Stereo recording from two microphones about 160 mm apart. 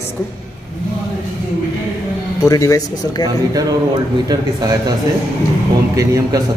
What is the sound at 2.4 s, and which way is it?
Speech, 20° left (ahead or behind).